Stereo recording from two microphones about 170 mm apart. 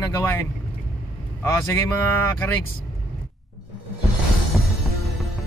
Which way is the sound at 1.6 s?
15° left (ahead or behind).